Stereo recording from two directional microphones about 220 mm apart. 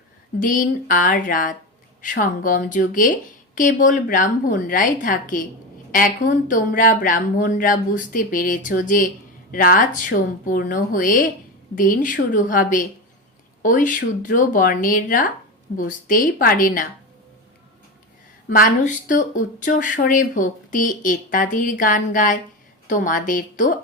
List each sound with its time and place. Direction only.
0.3 s speech: 35° left (ahead or behind)
18.4 s speech: 40° left (ahead or behind)